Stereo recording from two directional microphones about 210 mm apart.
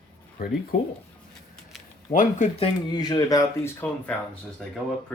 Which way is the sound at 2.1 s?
35° left (ahead or behind).